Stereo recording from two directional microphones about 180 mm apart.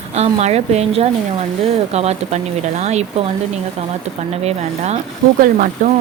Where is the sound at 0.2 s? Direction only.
35° right (ahead or behind).